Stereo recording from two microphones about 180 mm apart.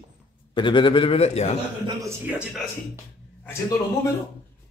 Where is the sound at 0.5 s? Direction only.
25° left (ahead or behind).